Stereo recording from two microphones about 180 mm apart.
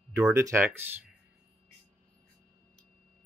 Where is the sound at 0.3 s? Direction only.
15° right (ahead or behind).